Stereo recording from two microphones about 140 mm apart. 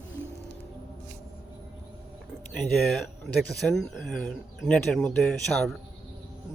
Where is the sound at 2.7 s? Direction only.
Centre (ahead or behind).